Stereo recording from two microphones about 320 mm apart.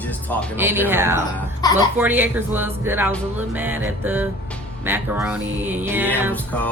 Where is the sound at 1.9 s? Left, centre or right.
Centre.